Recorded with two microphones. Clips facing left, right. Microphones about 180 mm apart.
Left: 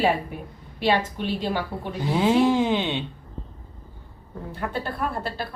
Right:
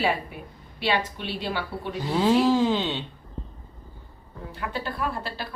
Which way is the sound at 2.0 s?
15° left (ahead or behind).